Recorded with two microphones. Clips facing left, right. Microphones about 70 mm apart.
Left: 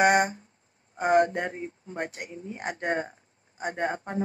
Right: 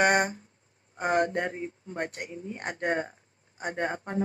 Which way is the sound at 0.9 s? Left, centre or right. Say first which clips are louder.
Left 4 dB; centre.